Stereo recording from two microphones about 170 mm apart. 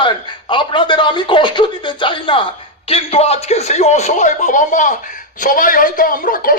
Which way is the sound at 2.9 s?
40° left (ahead or behind).